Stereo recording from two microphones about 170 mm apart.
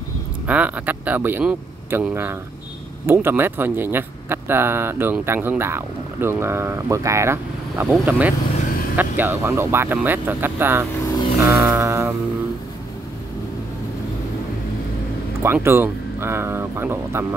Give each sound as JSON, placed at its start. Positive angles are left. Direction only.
{"t": 0.5, "sound": "speech", "side_deg": -10}
{"t": 8.5, "sound": "vehicle", "side_deg": 50}
{"t": 8.9, "sound": "speech", "side_deg": -10}
{"t": 15.4, "sound": "speech", "side_deg": -15}